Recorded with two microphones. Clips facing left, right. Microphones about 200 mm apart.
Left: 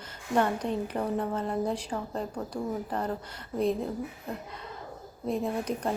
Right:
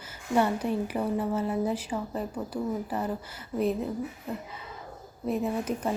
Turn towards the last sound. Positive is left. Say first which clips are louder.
# right 1 dB
turn(degrees=-5)  # may be behind; listen again after turning